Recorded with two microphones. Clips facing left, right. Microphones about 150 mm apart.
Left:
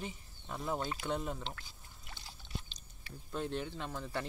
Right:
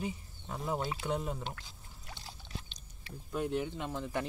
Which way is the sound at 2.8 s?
30° left (ahead or behind).